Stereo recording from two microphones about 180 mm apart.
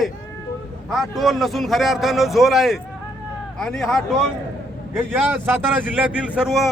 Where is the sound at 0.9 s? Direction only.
Centre (ahead or behind).